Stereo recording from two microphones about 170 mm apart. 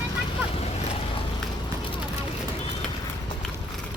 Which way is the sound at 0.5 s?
35° left (ahead or behind).